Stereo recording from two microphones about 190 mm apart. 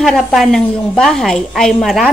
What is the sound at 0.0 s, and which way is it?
A woman's voice, centre (ahead or behind).